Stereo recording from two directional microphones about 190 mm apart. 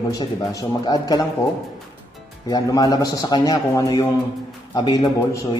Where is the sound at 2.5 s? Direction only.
20° left (ahead or behind).